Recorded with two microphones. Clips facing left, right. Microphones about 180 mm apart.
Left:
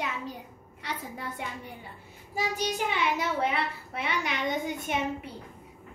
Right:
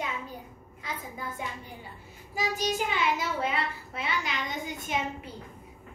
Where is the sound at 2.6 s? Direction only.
60° left (ahead or behind).